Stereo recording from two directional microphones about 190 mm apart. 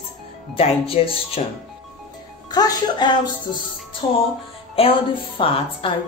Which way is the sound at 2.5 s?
20° left (ahead or behind).